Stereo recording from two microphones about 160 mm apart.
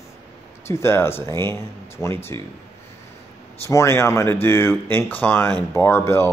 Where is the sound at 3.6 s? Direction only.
15° left (ahead or behind).